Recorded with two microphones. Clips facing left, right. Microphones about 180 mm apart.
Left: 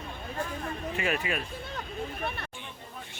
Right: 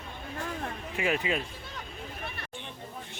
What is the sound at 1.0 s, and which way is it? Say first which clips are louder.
Speech: right 3 dB; 20° right (ahead or behind).